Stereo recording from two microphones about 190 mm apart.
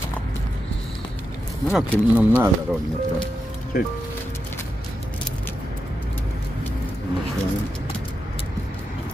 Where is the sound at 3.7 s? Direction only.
50° left (ahead or behind).